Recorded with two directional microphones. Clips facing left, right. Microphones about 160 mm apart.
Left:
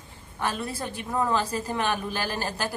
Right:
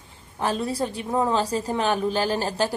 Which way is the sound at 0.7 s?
35° right (ahead or behind).